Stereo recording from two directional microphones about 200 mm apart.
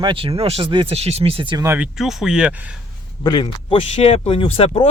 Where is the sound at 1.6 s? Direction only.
10° right (ahead or behind).